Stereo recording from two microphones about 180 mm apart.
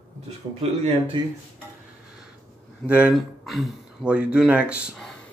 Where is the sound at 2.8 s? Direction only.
5° right (ahead or behind).